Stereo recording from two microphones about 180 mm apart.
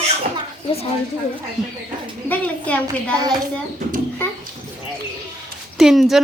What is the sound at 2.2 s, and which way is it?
Speech, 10° left (ahead or behind).